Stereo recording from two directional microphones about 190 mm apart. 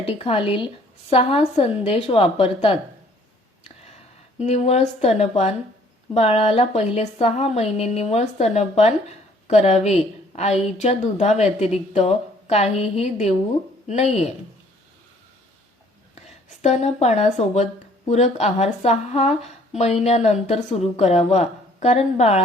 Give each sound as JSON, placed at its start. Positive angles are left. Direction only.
{"t": 0.0, "sound": "a woman's voice", "side_deg": 30}
{"t": 4.4, "sound": "speech", "side_deg": 35}
{"t": 16.6, "sound": "speech", "side_deg": 35}